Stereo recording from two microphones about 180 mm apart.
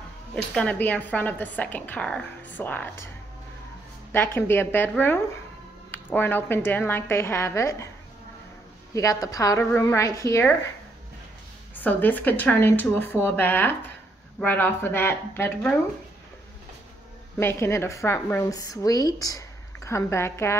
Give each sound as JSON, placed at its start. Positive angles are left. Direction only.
{"t": 0.3, "sound": "a woman's voice", "side_deg": 5}
{"t": 4.1, "sound": "a woman's voice", "side_deg": 10}
{"t": 8.9, "sound": "a woman's voice", "side_deg": 20}
{"t": 11.7, "sound": "a woman's voice", "side_deg": 10}
{"t": 17.4, "sound": "a woman's voice", "side_deg": 15}